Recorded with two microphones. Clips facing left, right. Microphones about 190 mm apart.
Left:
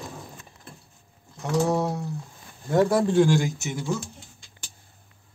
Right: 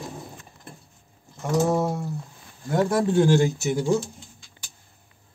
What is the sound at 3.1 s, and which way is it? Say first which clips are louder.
Speech: right 1 dB; 30° right (ahead or behind).